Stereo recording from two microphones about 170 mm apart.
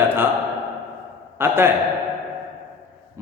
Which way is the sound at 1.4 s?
15° right (ahead or behind).